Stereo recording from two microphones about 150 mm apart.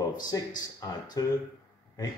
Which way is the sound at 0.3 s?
25° left (ahead or behind).